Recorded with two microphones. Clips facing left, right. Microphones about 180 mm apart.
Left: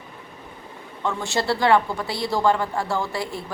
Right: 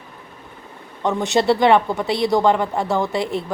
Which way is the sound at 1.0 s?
20° right (ahead or behind).